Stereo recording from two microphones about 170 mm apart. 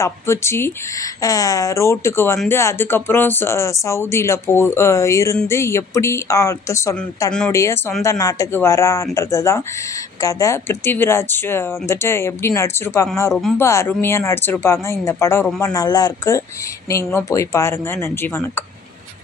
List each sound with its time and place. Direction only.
0.0 s speech: 15° left (ahead or behind)
13.3 s speech: centre (ahead or behind)
13.6 s speech: 15° left (ahead or behind)